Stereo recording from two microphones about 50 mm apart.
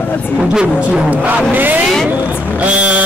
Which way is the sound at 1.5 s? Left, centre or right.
Right.